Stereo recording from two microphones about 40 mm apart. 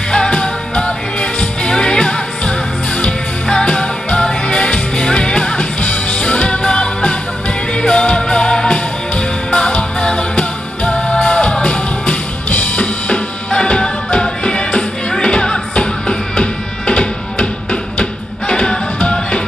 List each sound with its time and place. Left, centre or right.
0.1 s music: left
18.5 s music: left